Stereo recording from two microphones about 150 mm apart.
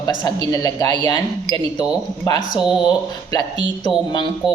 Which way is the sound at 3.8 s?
30° left (ahead or behind).